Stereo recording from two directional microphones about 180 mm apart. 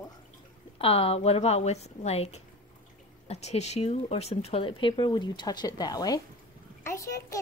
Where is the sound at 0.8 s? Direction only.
30° left (ahead or behind).